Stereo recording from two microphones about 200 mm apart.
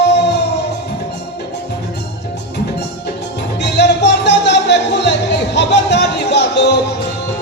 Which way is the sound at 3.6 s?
60° left (ahead or behind).